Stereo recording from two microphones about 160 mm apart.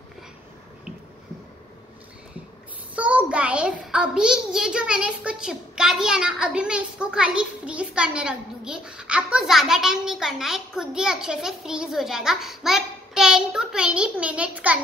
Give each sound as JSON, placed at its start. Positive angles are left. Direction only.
{"t": 3.0, "sound": "a child's voice", "side_deg": -10}